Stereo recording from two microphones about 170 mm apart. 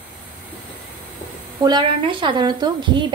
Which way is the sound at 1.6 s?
25° right (ahead or behind).